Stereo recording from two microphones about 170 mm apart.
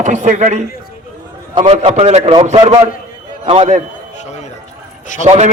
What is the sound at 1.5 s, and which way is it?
A man's voice, 35° right (ahead or behind).